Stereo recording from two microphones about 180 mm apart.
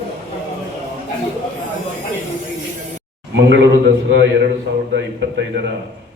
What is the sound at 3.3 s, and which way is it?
Speech, 75° right (ahead or behind).